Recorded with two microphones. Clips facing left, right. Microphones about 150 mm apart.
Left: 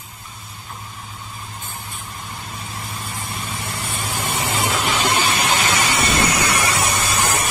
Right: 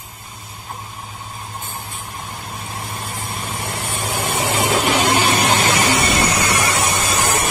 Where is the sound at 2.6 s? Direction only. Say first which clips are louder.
Right 3 dB; 55° right (ahead or behind).